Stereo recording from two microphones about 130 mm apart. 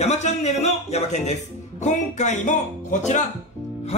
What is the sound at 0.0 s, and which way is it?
Speech, 60° left (ahead or behind).